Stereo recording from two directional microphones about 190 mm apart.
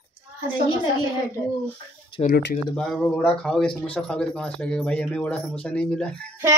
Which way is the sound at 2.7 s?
5° left (ahead or behind).